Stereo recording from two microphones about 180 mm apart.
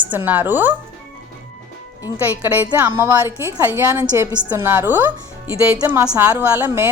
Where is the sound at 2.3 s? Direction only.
10° right (ahead or behind).